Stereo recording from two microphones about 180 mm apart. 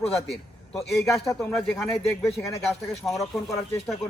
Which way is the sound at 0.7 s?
Centre (ahead or behind).